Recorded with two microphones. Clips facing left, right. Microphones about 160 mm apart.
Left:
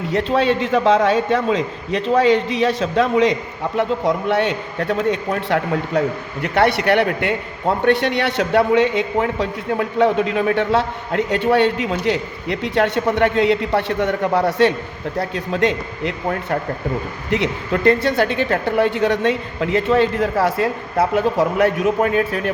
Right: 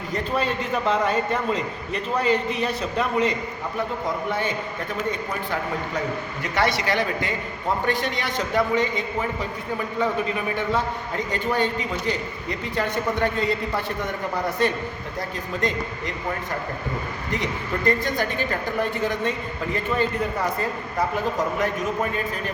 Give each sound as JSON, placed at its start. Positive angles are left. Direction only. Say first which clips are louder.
{"t": 0.1, "sound": "a man's voice", "louder": "left 8 dB", "side_deg": 85}
{"t": 3.8, "sound": "a man's voice", "louder": "left 8 dB", "side_deg": 80}
{"t": 6.4, "sound": "a man's voice", "louder": "left 7 dB", "side_deg": 60}